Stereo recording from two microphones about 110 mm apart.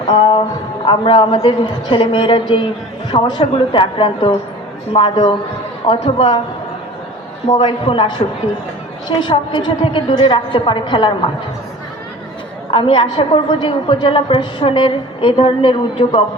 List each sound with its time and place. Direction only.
0.1 s a woman's voice: 45° left (ahead or behind)
5.9 s a man's voice: 60° left (ahead or behind)
7.4 s a woman's voice: 50° left (ahead or behind)
12.7 s a woman's voice: 50° left (ahead or behind)